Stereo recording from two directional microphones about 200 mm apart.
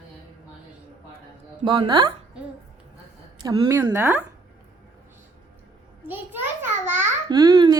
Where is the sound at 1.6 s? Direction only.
25° right (ahead or behind).